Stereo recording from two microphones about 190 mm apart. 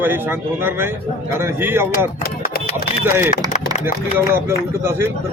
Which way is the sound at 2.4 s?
50° left (ahead or behind).